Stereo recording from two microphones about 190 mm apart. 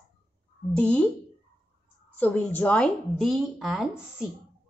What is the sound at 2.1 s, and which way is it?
A woman's voice, 10° left (ahead or behind).